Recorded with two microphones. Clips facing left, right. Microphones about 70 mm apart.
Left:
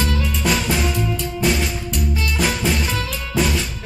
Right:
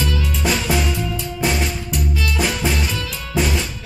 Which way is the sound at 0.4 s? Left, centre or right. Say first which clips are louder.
Right 1 dB; centre.